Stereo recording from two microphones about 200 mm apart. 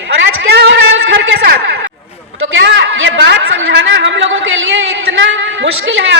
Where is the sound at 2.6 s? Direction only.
65° right (ahead or behind).